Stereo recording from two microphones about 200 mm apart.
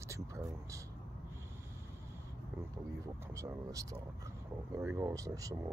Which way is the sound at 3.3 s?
15° right (ahead or behind).